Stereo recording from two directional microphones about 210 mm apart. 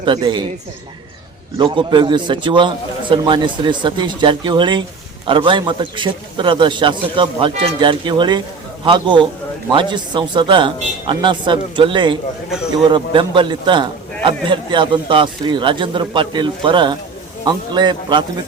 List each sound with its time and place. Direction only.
0.0 s a man's voice: 20° right (ahead or behind)
1.5 s a man's voice: 25° right (ahead or behind)